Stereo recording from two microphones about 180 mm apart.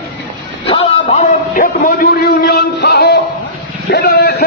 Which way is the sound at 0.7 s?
30° left (ahead or behind).